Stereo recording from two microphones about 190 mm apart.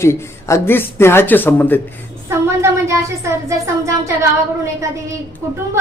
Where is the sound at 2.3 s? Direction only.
15° right (ahead or behind).